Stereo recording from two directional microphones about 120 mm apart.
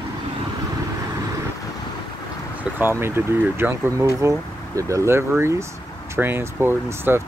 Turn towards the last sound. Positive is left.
turn(degrees=-20)  # may be behind; listen again after turning